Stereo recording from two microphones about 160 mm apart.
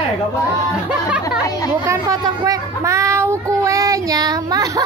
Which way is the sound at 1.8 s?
20° right (ahead or behind).